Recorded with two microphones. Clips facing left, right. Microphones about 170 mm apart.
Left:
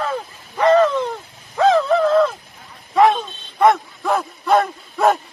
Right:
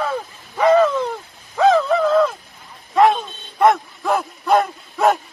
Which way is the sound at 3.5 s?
Centre (ahead or behind).